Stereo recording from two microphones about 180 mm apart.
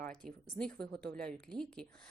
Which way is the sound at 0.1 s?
5° left (ahead or behind).